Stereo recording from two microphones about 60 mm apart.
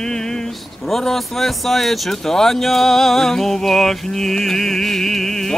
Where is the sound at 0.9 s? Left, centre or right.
Centre.